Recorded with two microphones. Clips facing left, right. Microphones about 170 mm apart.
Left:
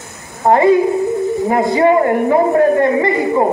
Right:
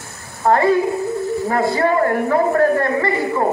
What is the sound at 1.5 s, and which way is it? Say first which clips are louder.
A man's voice: left 5 dB; 20° left (ahead or behind).